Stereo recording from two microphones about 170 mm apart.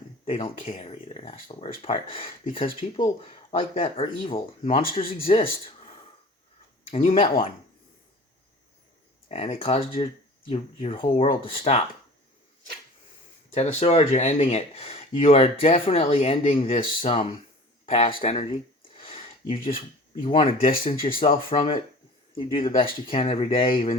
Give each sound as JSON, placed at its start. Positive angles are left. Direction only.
{"t": 0.3, "sound": "speech", "side_deg": 35}
{"t": 6.9, "sound": "speech", "side_deg": 35}
{"t": 9.3, "sound": "speech", "side_deg": 35}
{"t": 13.5, "sound": "speech", "side_deg": 40}
{"t": 19.0, "sound": "a sound", "side_deg": 35}
{"t": 20.2, "sound": "speech", "side_deg": 35}